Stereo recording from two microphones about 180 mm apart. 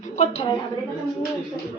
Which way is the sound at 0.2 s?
35° left (ahead or behind).